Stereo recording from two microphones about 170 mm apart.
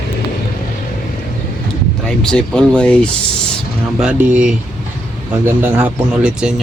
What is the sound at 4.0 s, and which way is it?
Speech, 10° right (ahead or behind).